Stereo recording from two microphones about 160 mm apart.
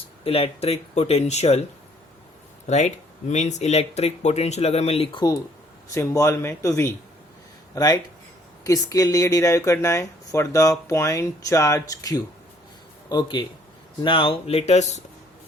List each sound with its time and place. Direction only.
0.3 s speech: 40° left (ahead or behind)
2.6 s speech: 45° left (ahead or behind)
5.9 s speech: 20° left (ahead or behind); by 14.6 s 35° left (ahead or behind)
14.7 s speech: 45° left (ahead or behind)